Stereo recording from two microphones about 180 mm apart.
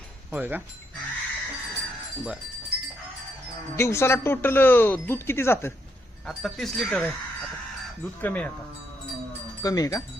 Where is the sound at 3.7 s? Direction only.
15° left (ahead or behind).